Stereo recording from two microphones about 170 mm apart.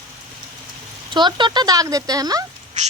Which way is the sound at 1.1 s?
25° right (ahead or behind).